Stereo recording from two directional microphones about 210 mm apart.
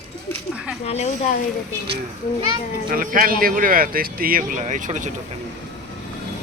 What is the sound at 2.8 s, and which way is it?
Speech, 40° right (ahead or behind).